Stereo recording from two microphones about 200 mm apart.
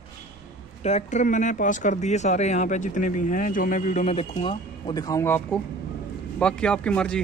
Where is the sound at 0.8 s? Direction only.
35° left (ahead or behind); by 7.2 s 5° left (ahead or behind).